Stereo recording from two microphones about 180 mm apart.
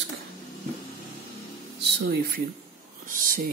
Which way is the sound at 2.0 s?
60° right (ahead or behind).